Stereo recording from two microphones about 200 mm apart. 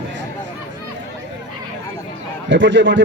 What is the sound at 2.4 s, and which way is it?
Speech, 65° right (ahead or behind).